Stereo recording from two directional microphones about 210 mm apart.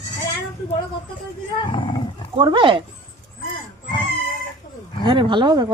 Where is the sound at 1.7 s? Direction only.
20° left (ahead or behind).